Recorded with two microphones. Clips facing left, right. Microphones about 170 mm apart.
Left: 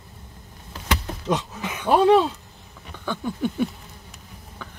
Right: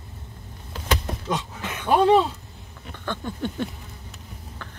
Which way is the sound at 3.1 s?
10° left (ahead or behind).